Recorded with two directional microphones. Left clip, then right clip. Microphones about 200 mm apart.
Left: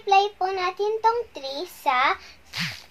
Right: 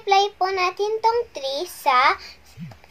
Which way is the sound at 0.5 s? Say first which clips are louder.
Right 3 dB; 10° right (ahead or behind).